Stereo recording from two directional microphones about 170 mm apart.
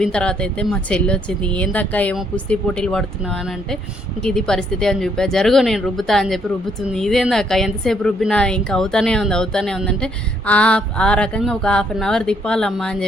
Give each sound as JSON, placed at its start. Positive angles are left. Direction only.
{"t": 0.0, "sound": "a woman's voice", "side_deg": 5}